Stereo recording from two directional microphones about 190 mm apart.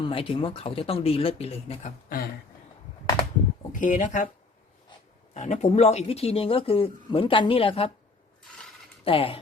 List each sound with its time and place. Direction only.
0.0 s speech: 30° left (ahead or behind)
3.7 s speech: 45° left (ahead or behind)
5.3 s speech: 40° left (ahead or behind)
9.0 s speech: 30° left (ahead or behind)